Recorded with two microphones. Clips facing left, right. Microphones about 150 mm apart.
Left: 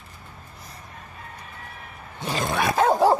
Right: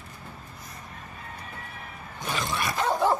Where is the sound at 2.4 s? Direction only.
50° left (ahead or behind).